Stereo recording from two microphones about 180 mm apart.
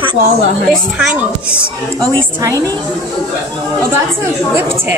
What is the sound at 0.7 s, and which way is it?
Speech, 5° right (ahead or behind).